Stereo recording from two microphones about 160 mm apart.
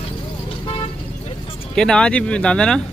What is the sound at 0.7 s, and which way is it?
Vehicle, 35° left (ahead or behind).